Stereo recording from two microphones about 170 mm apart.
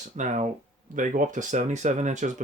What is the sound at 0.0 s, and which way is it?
Speech, 45° right (ahead or behind).